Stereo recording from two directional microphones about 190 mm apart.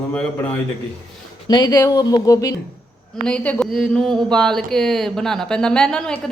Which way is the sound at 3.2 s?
5° left (ahead or behind).